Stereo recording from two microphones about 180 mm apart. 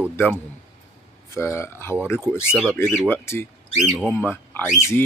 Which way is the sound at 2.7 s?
10° left (ahead or behind).